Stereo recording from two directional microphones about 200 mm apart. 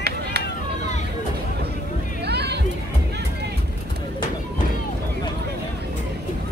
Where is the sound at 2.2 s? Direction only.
55° right (ahead or behind).